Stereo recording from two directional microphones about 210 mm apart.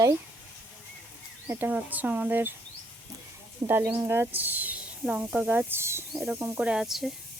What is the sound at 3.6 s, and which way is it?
Speech, 10° right (ahead or behind).